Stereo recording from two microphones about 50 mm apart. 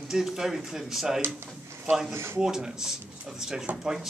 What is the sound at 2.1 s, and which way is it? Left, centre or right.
Speech, right.